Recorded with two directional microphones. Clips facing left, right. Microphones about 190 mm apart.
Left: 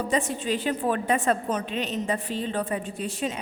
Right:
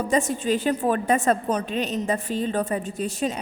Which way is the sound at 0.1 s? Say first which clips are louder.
Right 6 dB; 45° right (ahead or behind).